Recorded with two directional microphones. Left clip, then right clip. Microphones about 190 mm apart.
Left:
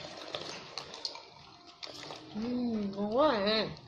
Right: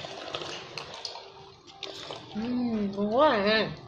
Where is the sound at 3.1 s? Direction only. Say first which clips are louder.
Right 5 dB; 5° right (ahead or behind).